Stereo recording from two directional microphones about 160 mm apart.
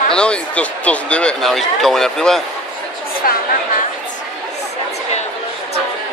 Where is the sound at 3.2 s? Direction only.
65° left (ahead or behind).